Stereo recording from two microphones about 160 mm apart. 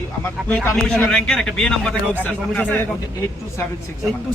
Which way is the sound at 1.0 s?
Centre (ahead or behind).